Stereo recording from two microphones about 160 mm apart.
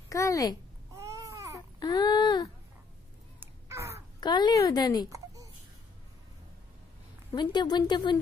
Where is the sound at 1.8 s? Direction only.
25° left (ahead or behind).